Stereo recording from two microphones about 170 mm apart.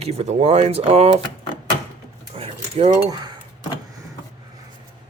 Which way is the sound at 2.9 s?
25° right (ahead or behind).